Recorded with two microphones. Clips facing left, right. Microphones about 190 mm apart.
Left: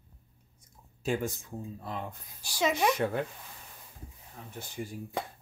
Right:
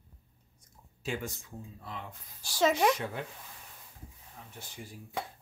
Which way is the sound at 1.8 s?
45° left (ahead or behind).